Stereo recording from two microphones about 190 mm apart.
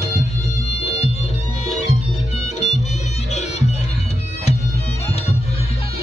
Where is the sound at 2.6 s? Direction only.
35° left (ahead or behind).